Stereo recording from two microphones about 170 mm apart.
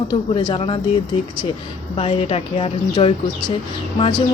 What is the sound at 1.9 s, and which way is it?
Speech, 35° left (ahead or behind).